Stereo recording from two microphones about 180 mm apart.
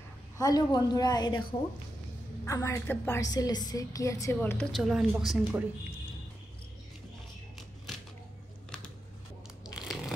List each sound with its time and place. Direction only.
0.4 s a woman's voice: 20° left (ahead or behind)
2.4 s a woman's voice: 15° left (ahead or behind)
4.8 s a woman's voice: centre (ahead or behind)
9.8 s a sound: centre (ahead or behind)